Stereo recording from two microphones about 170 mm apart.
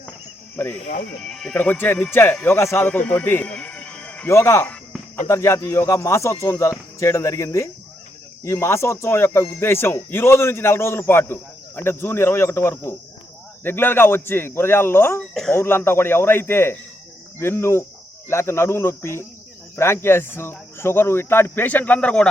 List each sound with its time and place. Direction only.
0.5 s speech: 10° left (ahead or behind)